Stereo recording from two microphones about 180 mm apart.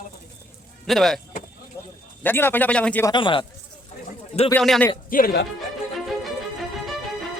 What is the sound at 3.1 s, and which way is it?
Speech, 25° left (ahead or behind).